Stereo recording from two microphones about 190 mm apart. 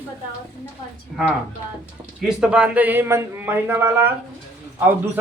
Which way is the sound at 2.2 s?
5° right (ahead or behind).